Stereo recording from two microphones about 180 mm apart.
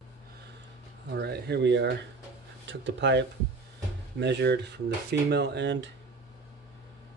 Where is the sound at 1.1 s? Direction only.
65° right (ahead or behind).